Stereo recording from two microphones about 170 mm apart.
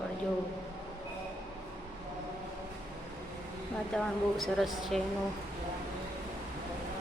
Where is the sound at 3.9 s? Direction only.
Centre (ahead or behind).